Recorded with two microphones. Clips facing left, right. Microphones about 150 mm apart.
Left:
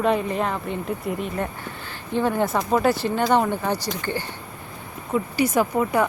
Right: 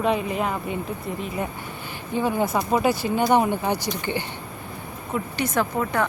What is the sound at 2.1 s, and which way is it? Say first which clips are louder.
A woman's voice: left 1 dB; 10° right (ahead or behind).